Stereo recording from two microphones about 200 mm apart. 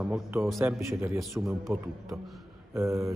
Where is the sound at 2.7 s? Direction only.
15° right (ahead or behind).